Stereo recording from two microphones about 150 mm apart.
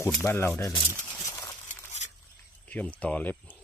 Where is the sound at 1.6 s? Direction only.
50° left (ahead or behind).